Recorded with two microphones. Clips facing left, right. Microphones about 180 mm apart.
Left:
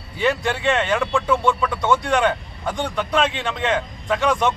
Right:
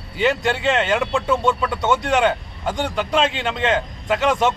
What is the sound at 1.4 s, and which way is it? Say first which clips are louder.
Speech: even; 5° right (ahead or behind).